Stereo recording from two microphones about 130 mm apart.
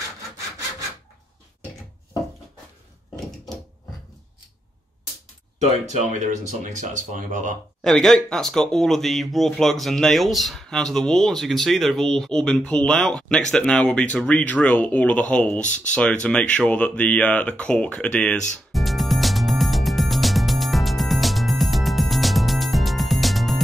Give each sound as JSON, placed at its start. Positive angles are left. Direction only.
{"t": 5.6, "sound": "speech", "side_deg": -60}
{"t": 7.8, "sound": "speech", "side_deg": 0}
{"t": 18.7, "sound": "music", "side_deg": 0}